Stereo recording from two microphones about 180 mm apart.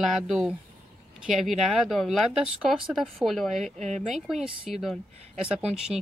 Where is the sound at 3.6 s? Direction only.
40° right (ahead or behind).